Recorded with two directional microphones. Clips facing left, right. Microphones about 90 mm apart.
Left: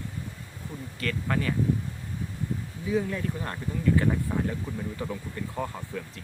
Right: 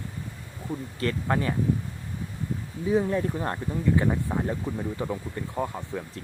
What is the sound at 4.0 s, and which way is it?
Speech, 20° right (ahead or behind).